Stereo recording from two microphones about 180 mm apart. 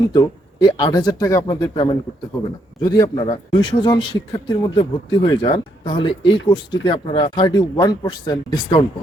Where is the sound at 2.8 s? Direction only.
20° left (ahead or behind).